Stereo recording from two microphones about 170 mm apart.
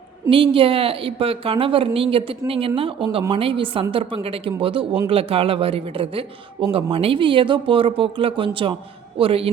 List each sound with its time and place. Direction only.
0.3 s a man's voice: 30° right (ahead or behind)